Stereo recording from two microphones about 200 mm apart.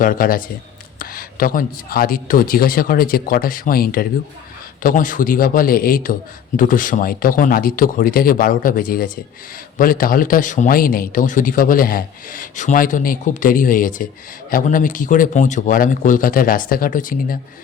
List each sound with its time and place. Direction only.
0.0 s a man's voice: 45° left (ahead or behind)